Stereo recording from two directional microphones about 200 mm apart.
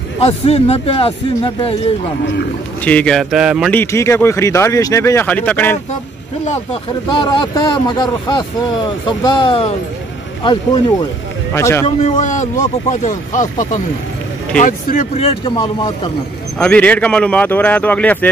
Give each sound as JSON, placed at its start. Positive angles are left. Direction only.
{"t": 0.2, "sound": "speech", "side_deg": 30}
{"t": 2.8, "sound": "speech", "side_deg": 5}
{"t": 3.7, "sound": "speech", "side_deg": 15}
{"t": 6.4, "sound": "speech", "side_deg": 30}
{"t": 12.0, "sound": "speech", "side_deg": 40}
{"t": 16.5, "sound": "speech", "side_deg": 5}